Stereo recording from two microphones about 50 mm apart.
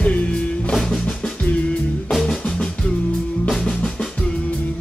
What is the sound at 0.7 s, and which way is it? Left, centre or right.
Drum, centre.